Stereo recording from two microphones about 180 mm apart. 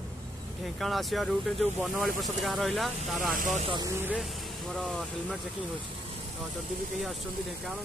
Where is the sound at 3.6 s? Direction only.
25° right (ahead or behind).